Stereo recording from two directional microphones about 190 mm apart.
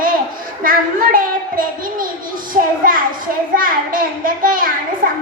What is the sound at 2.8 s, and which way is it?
Speech, 45° right (ahead or behind).